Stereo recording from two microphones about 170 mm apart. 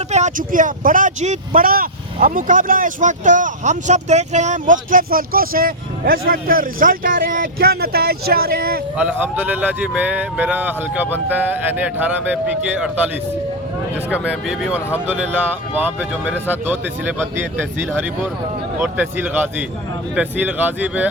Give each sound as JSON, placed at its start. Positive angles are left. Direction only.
{"t": 0.1, "sound": "speech", "side_deg": -45}
{"t": 9.0, "sound": "speech", "side_deg": -10}
{"t": 14.1, "sound": "speech", "side_deg": -5}
{"t": 18.8, "sound": "speech", "side_deg": -10}